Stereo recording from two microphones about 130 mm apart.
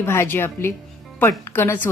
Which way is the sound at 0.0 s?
20° left (ahead or behind).